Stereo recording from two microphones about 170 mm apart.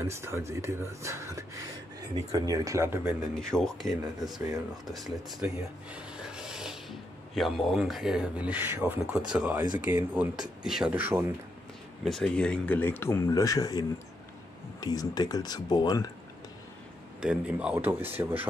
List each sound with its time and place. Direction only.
0.0 s speech: 15° right (ahead or behind)
3.3 s speech: 5° left (ahead or behind); by 11.3 s 15° right (ahead or behind)
12.0 s speech: 5° left (ahead or behind); by 16.1 s 25° left (ahead or behind)
17.2 s speech: 5° right (ahead or behind)